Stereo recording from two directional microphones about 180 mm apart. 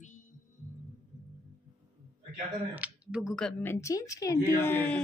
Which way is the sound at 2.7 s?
5° right (ahead or behind).